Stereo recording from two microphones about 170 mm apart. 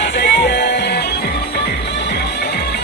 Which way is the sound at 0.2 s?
80° left.